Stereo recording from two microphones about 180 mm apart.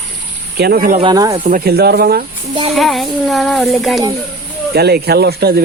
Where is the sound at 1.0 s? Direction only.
25° right (ahead or behind).